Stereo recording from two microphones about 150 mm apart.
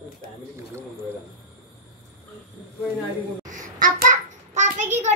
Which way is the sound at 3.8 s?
60° right (ahead or behind).